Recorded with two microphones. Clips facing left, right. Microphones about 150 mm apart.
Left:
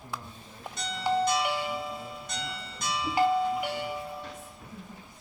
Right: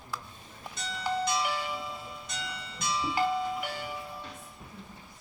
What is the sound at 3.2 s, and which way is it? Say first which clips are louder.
Doorbell: left 6 dB; 15° left (ahead or behind).